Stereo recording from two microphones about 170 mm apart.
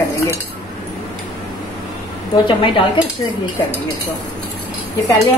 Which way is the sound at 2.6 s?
30° left (ahead or behind).